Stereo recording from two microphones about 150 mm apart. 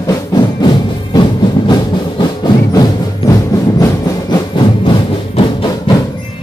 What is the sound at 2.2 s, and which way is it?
Music, 30° left (ahead or behind).